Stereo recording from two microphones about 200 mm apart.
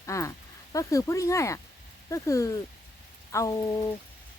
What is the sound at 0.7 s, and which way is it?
Speech, 15° left (ahead or behind).